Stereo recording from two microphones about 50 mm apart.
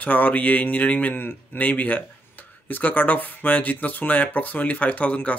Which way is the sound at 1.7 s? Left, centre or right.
Left.